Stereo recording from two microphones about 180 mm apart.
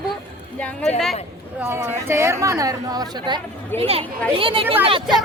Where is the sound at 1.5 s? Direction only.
15° right (ahead or behind); by 5.0 s 30° right (ahead or behind).